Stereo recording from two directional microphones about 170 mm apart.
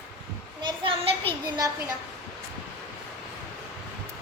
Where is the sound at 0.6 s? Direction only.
30° right (ahead or behind).